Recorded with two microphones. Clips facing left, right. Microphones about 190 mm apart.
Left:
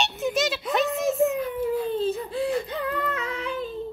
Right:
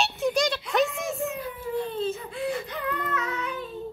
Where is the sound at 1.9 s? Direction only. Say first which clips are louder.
Left 4 dB; 35° left (ahead or behind).